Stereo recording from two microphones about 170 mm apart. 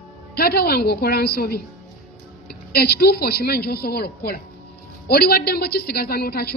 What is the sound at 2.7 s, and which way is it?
A man's voice, 65° left (ahead or behind).